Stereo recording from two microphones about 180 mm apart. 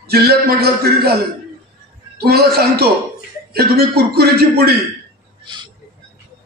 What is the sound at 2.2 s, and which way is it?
A man's voice, 60° right (ahead or behind).